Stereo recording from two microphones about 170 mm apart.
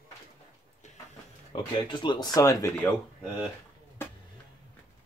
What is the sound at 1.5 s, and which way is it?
Speech, 30° left (ahead or behind).